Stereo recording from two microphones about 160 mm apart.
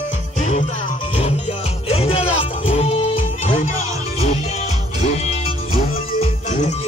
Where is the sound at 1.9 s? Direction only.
40° left (ahead or behind).